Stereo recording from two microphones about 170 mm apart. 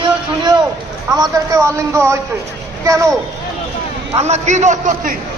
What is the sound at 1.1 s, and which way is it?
A man's voice, 20° right (ahead or behind).